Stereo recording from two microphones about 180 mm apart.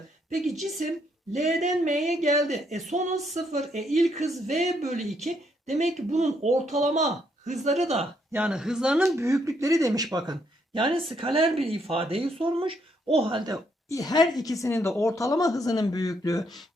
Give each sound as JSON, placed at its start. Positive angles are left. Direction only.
{"t": 0.3, "sound": "speech", "side_deg": 0}
{"t": 1.3, "sound": "speech", "side_deg": -40}
{"t": 2.4, "sound": "speech", "side_deg": 0}
{"t": 2.9, "sound": "a sound", "side_deg": -45}
{"t": 3.3, "sound": "speech", "side_deg": -40}
{"t": 4.9, "sound": "speech", "side_deg": 0}
{"t": 5.2, "sound": "speech", "side_deg": -40}
{"t": 8.3, "sound": "speech", "side_deg": -5}
{"t": 9.0, "sound": "speech", "side_deg": -15}
{"t": 13.9, "sound": "speech", "side_deg": 20}